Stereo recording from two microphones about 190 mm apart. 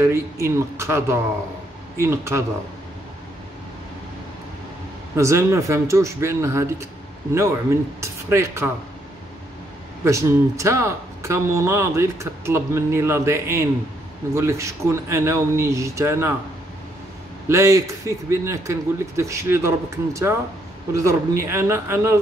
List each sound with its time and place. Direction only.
0.0 s speech: 15° right (ahead or behind)
5.1 s speech: 15° right (ahead or behind)
8.0 s speech: 15° right (ahead or behind)
10.0 s speech: 15° right (ahead or behind)
17.5 s speech: 15° right (ahead or behind)